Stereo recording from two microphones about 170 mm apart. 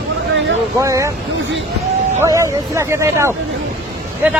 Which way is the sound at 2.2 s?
15° right (ahead or behind).